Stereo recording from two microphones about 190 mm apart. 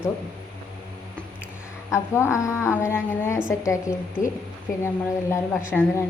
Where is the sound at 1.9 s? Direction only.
15° left (ahead or behind).